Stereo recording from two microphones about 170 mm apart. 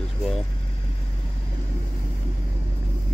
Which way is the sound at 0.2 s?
Centre (ahead or behind).